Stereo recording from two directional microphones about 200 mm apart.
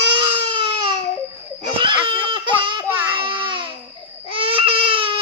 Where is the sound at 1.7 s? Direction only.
25° right (ahead or behind).